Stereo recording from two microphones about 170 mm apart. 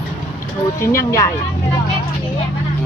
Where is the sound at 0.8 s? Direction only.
15° left (ahead or behind).